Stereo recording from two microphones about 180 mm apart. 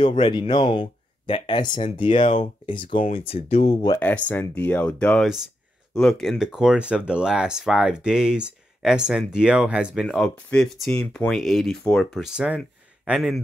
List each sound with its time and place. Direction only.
0.2 s speech: 25° left (ahead or behind)
4.0 s speech: 10° left (ahead or behind)